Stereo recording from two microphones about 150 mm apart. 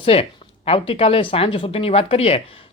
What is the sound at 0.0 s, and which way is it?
Speech, 40° left (ahead or behind).